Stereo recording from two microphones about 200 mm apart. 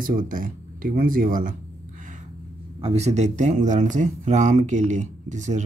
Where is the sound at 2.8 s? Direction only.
30° right (ahead or behind).